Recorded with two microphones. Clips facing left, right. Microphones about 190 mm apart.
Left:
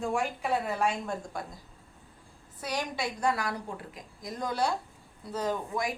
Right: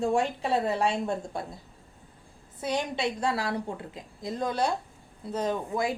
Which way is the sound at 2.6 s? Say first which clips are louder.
Right 4 dB; 25° right (ahead or behind).